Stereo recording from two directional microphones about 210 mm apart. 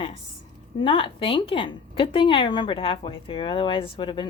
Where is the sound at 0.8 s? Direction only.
25° left (ahead or behind).